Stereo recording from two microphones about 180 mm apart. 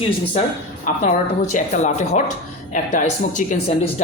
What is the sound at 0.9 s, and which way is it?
A man's voice, 40° left (ahead or behind).